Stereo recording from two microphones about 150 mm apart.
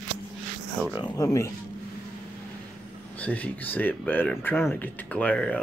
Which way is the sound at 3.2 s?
10° left (ahead or behind).